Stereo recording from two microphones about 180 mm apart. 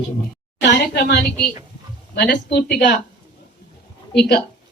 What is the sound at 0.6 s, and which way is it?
A woman's voice, 70° left (ahead or behind).